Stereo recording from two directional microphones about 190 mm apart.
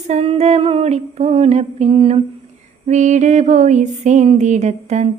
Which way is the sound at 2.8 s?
40° right (ahead or behind).